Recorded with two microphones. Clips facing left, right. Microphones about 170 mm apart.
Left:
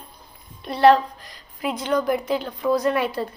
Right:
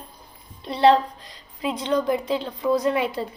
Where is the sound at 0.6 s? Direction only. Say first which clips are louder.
Left 2 dB; 25° right (ahead or behind).